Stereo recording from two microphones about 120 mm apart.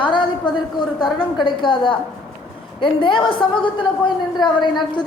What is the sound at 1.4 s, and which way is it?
A woman's voice, 40° left (ahead or behind).